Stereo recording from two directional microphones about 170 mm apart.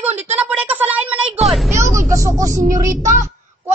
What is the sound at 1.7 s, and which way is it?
Vehicle, 15° right (ahead or behind).